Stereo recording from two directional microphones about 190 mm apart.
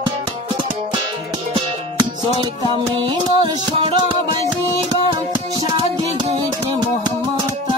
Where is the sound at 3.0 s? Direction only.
25° right (ahead or behind).